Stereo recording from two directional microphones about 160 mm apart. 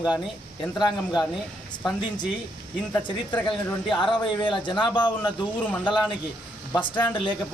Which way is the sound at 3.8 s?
30° left (ahead or behind).